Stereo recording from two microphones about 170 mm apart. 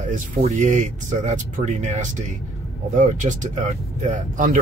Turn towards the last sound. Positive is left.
turn(degrees=-45)  # may be behind; listen again after turning